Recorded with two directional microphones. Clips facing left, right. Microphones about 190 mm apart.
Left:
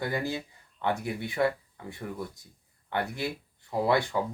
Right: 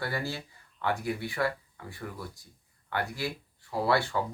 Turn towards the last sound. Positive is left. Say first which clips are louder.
# left 2 dB
turn(degrees=20)  # may be behind; listen again after turning